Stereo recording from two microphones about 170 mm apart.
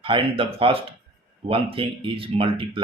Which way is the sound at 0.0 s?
30° right (ahead or behind).